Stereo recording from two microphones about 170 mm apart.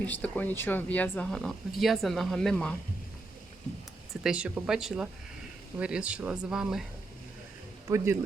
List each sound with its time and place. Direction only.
0.0 s speech: 10° left (ahead or behind)
4.1 s speech: 5° right (ahead or behind)
7.9 s a man's voice: 15° right (ahead or behind)